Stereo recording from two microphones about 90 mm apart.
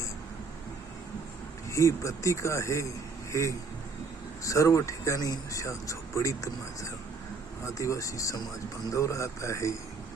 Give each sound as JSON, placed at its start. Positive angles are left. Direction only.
{"t": 1.7, "sound": "speech", "side_deg": 35}